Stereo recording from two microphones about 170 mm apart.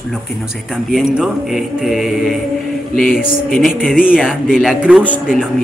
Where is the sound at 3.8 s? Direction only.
55° left (ahead or behind).